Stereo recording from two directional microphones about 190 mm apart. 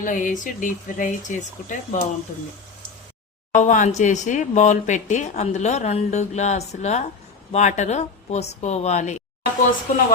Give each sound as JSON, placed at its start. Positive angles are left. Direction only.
{"t": 0.0, "sound": "speech", "side_deg": 45}
{"t": 3.5, "sound": "speech", "side_deg": 40}